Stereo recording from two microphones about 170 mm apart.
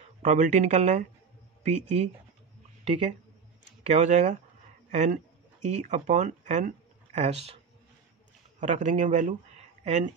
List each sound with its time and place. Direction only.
0.2 s speech: 45° right (ahead or behind)
8.5 s speech: 45° right (ahead or behind)